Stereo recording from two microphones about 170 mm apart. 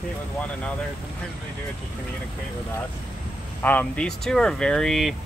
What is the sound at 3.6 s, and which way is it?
Speech, 10° left (ahead or behind).